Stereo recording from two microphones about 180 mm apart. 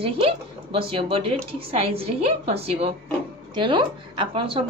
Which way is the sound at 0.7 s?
30° right (ahead or behind).